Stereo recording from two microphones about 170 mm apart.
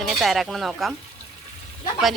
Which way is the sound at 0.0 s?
Centre (ahead or behind).